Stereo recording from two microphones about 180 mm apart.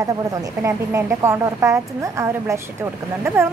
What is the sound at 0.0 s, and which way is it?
A woman's voice, 15° right (ahead or behind).